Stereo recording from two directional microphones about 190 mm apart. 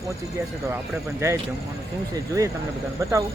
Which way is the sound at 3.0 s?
15° right (ahead or behind).